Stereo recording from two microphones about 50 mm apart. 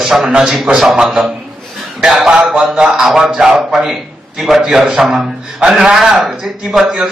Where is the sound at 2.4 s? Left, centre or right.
Centre.